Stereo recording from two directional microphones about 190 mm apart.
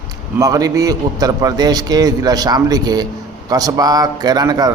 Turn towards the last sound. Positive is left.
turn(degrees=-20)  # may be behind; listen again after turning